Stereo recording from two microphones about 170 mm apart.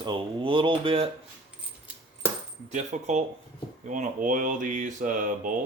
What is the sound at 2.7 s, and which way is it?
Speech, 45° right (ahead or behind).